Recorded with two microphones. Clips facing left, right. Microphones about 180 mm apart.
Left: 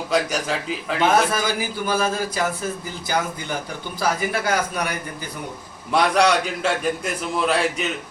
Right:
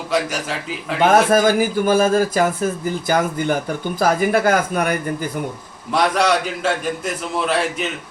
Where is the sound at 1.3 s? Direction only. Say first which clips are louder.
Right 9 dB; 50° right (ahead or behind).